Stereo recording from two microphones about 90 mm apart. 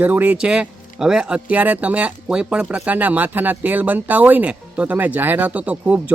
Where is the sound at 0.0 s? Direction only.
20° right (ahead or behind).